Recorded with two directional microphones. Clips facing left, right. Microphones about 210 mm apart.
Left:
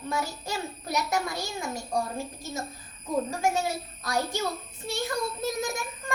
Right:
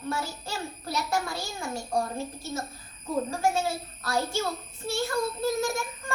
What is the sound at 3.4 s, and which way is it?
Speech, 15° left (ahead or behind).